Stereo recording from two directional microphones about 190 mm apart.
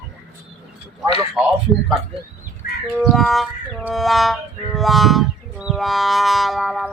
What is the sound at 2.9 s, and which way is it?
Music, centre (ahead or behind).